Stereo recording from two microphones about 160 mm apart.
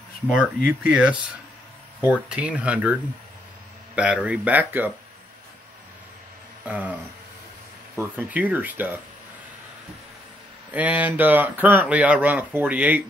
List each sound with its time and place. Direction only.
0.3 s speech: 5° right (ahead or behind)
2.3 s speech: 10° right (ahead or behind)
6.6 s speech: 10° right (ahead or behind)
10.7 s speech: 10° right (ahead or behind)